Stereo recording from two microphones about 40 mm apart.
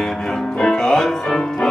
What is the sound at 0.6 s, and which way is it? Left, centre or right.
Music, centre.